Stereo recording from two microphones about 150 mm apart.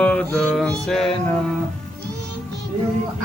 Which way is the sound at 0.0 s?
10° left (ahead or behind).